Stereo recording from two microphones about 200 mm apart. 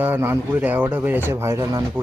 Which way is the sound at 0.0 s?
10° right (ahead or behind).